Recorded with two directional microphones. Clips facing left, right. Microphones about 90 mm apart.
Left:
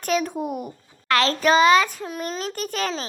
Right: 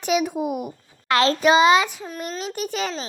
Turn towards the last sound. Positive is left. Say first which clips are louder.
# even
turn(degrees=-15)  # may be behind; listen again after turning